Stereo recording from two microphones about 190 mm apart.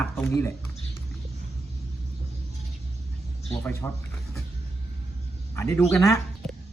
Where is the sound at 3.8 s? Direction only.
10° left (ahead or behind).